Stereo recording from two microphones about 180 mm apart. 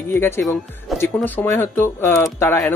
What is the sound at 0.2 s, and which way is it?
Speech, 15° left (ahead or behind).